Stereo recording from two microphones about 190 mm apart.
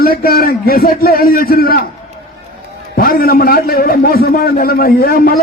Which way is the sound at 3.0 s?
50° left (ahead or behind).